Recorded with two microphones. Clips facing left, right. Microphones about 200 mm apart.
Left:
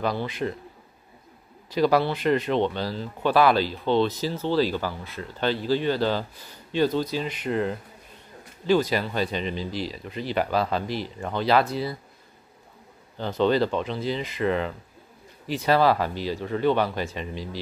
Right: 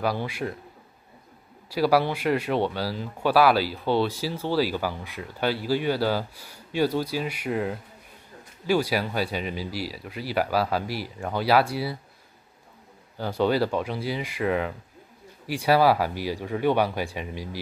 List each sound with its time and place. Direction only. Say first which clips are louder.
0.0 s speech: left 1 dB; 10° right (ahead or behind)
1.7 s speech: left 1 dB; 10° right (ahead or behind)
13.2 s speech: left 1 dB; 10° right (ahead or behind)